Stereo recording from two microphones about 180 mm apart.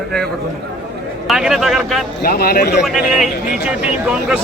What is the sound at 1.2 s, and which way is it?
Speech, centre (ahead or behind).